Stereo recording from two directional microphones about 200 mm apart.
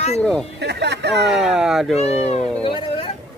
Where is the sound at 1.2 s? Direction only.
Centre (ahead or behind).